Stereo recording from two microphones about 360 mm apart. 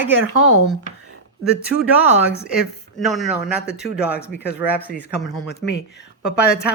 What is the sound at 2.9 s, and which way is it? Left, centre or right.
Speech, centre.